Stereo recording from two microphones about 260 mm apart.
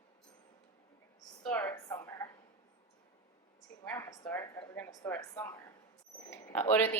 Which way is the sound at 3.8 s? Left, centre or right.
Centre.